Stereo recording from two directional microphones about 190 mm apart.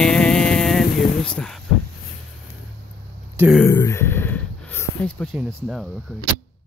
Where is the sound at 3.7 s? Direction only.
15° left (ahead or behind).